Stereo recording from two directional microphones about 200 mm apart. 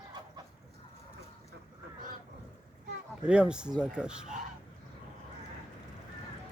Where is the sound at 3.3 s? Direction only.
5° right (ahead or behind).